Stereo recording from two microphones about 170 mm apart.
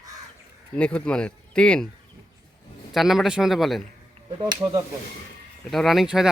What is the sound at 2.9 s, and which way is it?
Speech, centre (ahead or behind).